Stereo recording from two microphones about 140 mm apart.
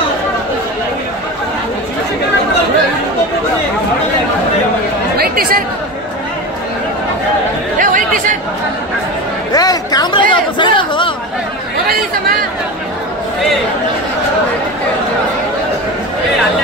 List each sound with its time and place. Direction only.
5.1 s chatter: 90° right
7.8 s chatter: 75° right (ahead or behind)
9.5 s a sound: 25° left (ahead or behind)
10.3 s chatter: 35° left (ahead or behind)